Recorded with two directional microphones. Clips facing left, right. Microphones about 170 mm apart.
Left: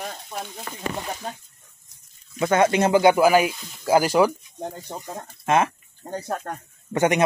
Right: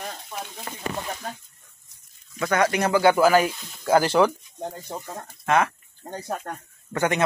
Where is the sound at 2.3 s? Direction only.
25° left (ahead or behind).